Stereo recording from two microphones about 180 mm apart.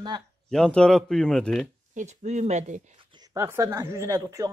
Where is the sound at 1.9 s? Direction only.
40° right (ahead or behind).